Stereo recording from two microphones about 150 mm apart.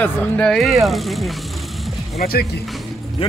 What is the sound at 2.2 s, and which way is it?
Speech, 90° left.